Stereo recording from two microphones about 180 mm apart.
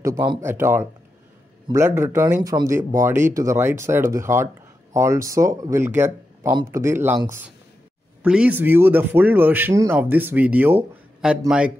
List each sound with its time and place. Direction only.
0.0 s speech: 20° right (ahead or behind); by 11.7 s 5° right (ahead or behind)